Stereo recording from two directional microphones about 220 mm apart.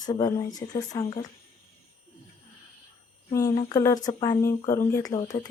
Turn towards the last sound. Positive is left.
turn(degrees=15)  # may be behind; listen again after turning